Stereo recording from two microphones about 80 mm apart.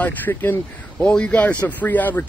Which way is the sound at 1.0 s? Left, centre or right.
Centre.